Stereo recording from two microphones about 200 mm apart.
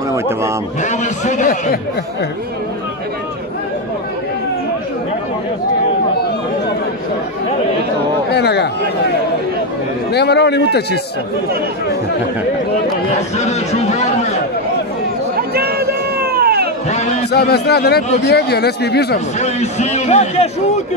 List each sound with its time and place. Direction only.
0.8 s a man's voice: 35° left (ahead or behind)
8.3 s speech: 55° left (ahead or behind)
10.1 s speech: 55° left (ahead or behind)
13.4 s a sound: 35° left (ahead or behind)
15.3 s a sound: 50° right (ahead or behind)
16.9 s a man's voice: 35° left (ahead or behind)
17.3 s a man's voice: 55° left (ahead or behind)
19.1 s a man's voice: 35° left (ahead or behind)